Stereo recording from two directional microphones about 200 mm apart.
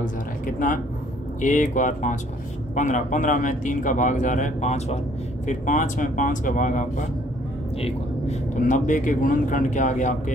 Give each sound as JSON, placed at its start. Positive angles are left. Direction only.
{"t": 0.0, "sound": "speech", "side_deg": 40}